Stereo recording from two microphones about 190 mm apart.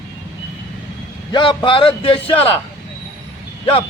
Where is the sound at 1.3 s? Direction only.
25° left (ahead or behind).